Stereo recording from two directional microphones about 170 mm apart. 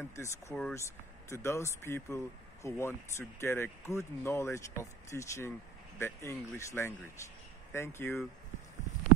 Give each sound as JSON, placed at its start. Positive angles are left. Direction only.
{"t": 0.1, "sound": "speech", "side_deg": 15}